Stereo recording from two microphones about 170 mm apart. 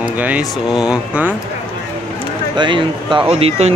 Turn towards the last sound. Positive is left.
turn(degrees=-35)  # may be behind; listen again after turning